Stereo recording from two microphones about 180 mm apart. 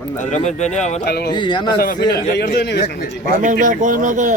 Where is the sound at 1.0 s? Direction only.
60° left (ahead or behind).